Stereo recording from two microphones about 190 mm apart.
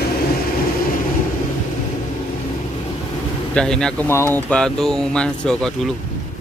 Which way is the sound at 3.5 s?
5° left (ahead or behind).